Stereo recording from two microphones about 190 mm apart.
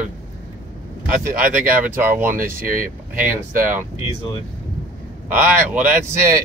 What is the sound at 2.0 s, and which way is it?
Speech, 10° right (ahead or behind).